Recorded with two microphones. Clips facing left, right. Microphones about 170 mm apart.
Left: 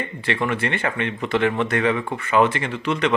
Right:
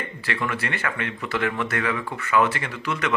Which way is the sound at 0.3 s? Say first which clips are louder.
Left 5 dB; 25° left (ahead or behind).